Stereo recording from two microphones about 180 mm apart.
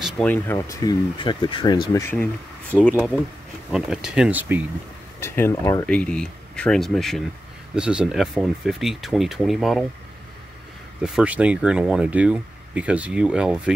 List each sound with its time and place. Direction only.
0.0 s speech: 10° left (ahead or behind); by 2.0 s 25° left (ahead or behind)
2.8 s speech: 10° left (ahead or behind)
3.7 s speech: 5° right (ahead or behind)
5.2 s speech: 15° left (ahead or behind)
5.9 s speech: 5° left (ahead or behind)
11.0 s speech: 5° right (ahead or behind)